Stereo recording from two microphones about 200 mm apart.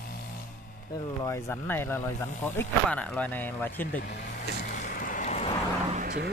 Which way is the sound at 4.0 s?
45° left (ahead or behind).